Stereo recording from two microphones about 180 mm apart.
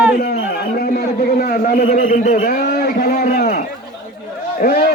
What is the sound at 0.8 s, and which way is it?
A man's voice, 60° left (ahead or behind).